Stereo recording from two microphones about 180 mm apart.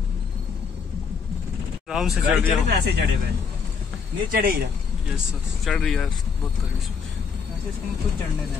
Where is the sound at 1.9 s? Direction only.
5° right (ahead or behind).